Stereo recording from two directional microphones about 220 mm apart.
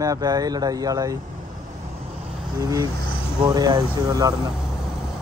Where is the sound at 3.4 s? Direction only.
15° right (ahead or behind).